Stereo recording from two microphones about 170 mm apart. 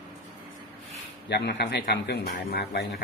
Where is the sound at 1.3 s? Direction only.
80° left.